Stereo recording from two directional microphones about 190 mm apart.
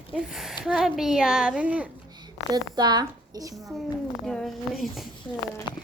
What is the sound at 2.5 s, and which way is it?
A woman's voice, 20° right (ahead or behind).